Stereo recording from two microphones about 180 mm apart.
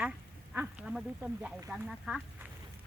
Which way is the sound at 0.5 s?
10° right (ahead or behind).